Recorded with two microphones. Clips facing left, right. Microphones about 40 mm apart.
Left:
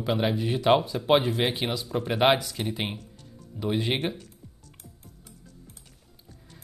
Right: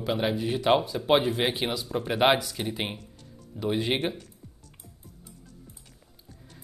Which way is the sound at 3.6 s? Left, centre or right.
Centre.